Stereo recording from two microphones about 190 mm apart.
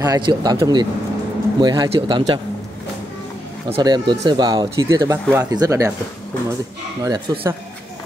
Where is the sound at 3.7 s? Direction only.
25° right (ahead or behind).